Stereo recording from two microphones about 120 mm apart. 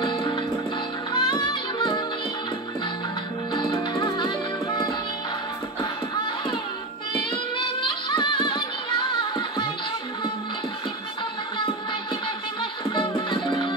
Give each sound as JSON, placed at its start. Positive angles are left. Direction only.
{"t": 1.1, "sound": "music", "side_deg": 40}
{"t": 3.5, "sound": "music", "side_deg": 40}
{"t": 7.2, "sound": "music", "side_deg": 45}